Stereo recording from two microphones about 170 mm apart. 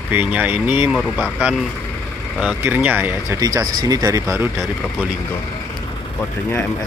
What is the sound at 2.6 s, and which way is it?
Speech, 10° right (ahead or behind).